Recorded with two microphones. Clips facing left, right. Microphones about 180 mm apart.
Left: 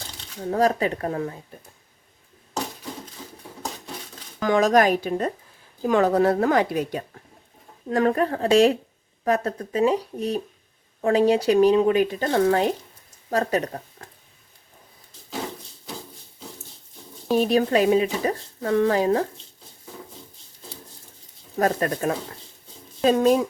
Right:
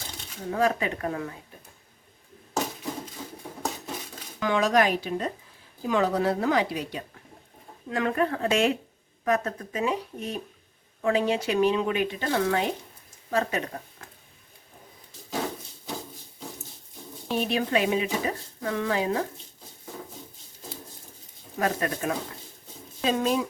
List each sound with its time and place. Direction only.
0.5 s speech: 35° left (ahead or behind)
4.4 s a woman's voice: 45° left (ahead or behind)
17.4 s speech: 40° left (ahead or behind)
21.6 s a woman's voice: 40° left (ahead or behind)